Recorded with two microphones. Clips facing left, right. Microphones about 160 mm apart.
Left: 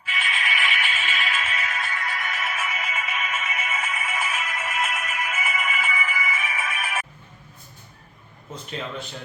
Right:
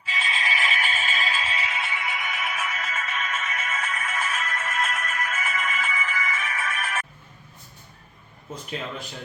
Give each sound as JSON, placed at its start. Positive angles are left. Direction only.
{"t": 0.2, "sound": "music", "side_deg": -35}
{"t": 2.1, "sound": "music", "side_deg": 0}